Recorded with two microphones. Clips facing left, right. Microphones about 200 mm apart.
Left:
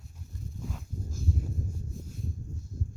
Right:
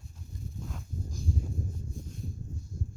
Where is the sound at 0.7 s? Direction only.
Centre (ahead or behind).